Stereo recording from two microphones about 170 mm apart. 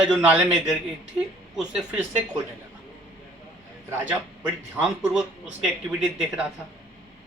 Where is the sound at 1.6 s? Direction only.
5° right (ahead or behind).